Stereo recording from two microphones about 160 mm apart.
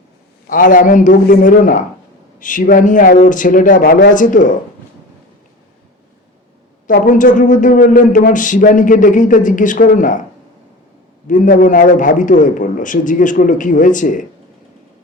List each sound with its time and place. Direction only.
0.4 s a man's voice: 60° left (ahead or behind)
7.0 s a man's voice: 55° left (ahead or behind)
11.3 s a man's voice: 55° left (ahead or behind)